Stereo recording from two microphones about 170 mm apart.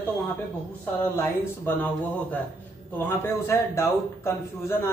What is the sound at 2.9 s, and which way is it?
A man's voice, 15° left (ahead or behind).